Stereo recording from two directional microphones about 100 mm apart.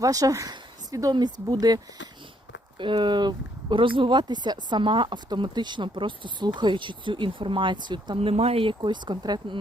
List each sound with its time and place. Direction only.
0.0 s speech: 35° right (ahead or behind)
0.5 s a sound: 35° right (ahead or behind)
1.1 s speech: 45° right (ahead or behind)
2.7 s speech: 55° right (ahead or behind)